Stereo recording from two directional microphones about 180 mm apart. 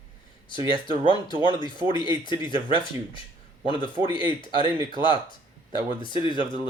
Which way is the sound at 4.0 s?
20° right (ahead or behind).